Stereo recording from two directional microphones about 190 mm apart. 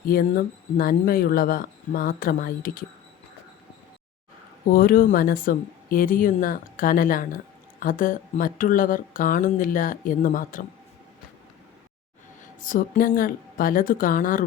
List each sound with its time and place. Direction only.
0.1 s speech: 50° left (ahead or behind)
4.7 s speech: 50° left (ahead or behind)
12.6 s speech: 45° left (ahead or behind)